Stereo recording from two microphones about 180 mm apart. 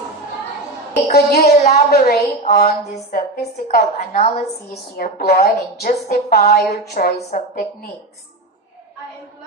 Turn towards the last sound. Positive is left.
turn(degrees=50)  # may be behind; listen again after turning